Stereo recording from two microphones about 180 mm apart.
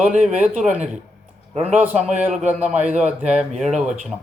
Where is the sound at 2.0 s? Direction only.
5° right (ahead or behind).